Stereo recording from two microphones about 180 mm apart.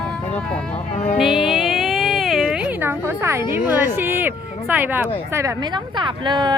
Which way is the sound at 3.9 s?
10° right (ahead or behind).